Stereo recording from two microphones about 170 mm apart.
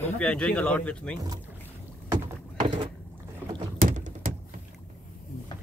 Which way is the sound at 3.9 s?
50° right (ahead or behind).